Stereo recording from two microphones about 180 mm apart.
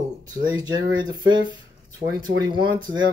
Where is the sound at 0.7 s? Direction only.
25° right (ahead or behind).